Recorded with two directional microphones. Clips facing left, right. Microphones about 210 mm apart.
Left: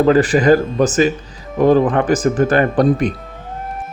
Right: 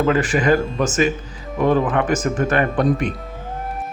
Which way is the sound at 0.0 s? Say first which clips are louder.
Left 6 dB; 35° left (ahead or behind).